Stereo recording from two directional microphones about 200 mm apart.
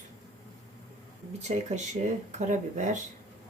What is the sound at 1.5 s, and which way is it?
Speech, 35° right (ahead or behind).